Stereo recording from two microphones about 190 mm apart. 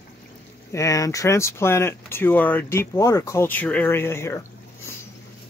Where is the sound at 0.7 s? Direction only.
15° left (ahead or behind).